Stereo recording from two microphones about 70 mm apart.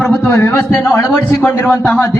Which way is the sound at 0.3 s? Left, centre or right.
Left.